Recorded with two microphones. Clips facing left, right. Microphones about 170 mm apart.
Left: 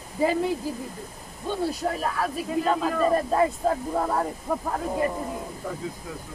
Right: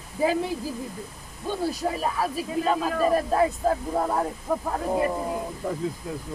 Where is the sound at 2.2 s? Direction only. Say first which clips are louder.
Left 1 dB; 10° right (ahead or behind).